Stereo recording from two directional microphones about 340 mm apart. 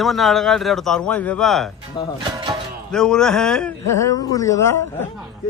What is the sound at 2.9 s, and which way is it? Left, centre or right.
A man's voice, centre.